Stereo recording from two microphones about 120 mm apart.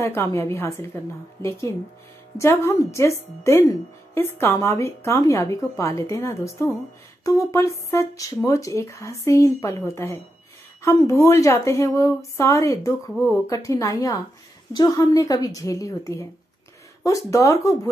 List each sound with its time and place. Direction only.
0.0 s a woman's voice: 20° left (ahead or behind)